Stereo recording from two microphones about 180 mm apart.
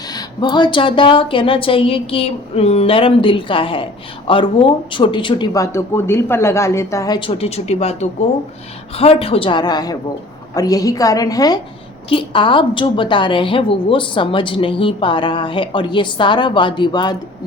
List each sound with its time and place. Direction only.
0.1 s a woman's voice: 25° left (ahead or behind)
9.0 s a woman's voice: 30° left (ahead or behind)